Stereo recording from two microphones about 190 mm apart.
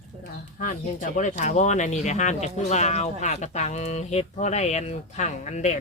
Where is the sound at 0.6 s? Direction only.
45° left (ahead or behind).